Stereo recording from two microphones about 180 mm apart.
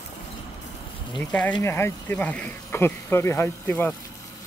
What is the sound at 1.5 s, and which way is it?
Speech, 15° left (ahead or behind).